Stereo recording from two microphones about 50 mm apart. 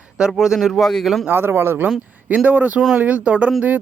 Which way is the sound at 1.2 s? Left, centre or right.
Right.